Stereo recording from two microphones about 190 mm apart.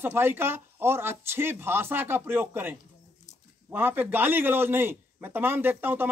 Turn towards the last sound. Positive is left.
turn(degrees=-10)  # may be behind; listen again after turning